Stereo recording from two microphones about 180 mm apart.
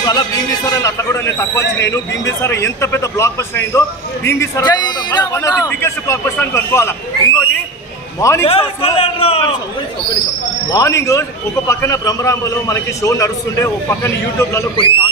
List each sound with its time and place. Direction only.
0.0 s a man's voice: 20° left (ahead or behind)
8.5 s a man's voice: 30° left (ahead or behind)
10.7 s a man's voice: 15° left (ahead or behind)